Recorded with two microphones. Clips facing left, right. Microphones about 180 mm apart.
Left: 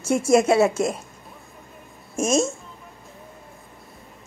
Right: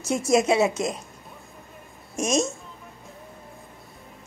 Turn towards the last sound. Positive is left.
turn(degrees=25)  # may be behind; listen again after turning